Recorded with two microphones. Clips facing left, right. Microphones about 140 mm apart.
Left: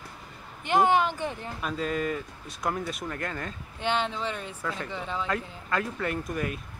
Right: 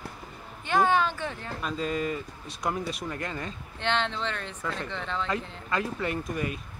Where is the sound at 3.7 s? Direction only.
10° left (ahead or behind).